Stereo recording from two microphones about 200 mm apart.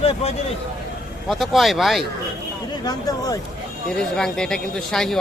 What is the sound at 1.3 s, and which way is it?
Speech, centre (ahead or behind).